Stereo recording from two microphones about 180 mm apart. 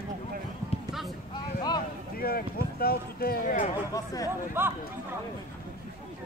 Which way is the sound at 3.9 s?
20° left (ahead or behind).